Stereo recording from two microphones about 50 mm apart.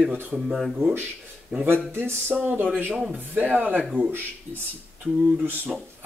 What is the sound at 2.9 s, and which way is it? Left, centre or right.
Speech, right.